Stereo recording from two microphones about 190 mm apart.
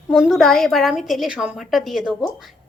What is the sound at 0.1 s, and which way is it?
A woman's voice, centre (ahead or behind).